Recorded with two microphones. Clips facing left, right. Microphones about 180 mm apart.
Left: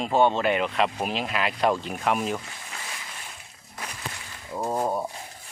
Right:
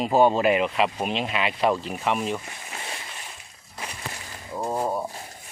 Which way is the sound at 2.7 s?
30° right (ahead or behind).